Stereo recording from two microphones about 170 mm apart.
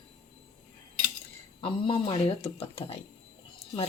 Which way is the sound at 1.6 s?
30° left (ahead or behind).